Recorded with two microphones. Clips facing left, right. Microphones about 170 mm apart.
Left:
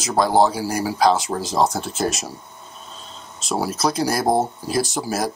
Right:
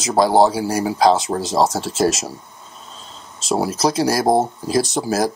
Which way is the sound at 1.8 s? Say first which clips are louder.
Right 5 dB; 90° right.